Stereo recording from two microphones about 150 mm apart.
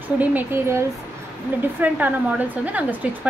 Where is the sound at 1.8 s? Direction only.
10° right (ahead or behind).